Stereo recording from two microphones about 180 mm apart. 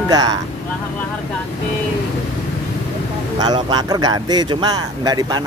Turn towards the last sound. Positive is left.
turn(degrees=-20)  # may be behind; listen again after turning